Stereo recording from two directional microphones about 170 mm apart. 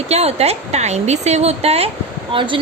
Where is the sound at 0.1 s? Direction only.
40° right (ahead or behind).